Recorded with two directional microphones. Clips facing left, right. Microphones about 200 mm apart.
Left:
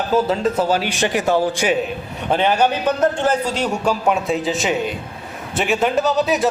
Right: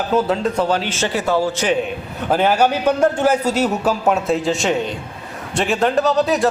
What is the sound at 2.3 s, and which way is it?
A man's voice, 5° right (ahead or behind).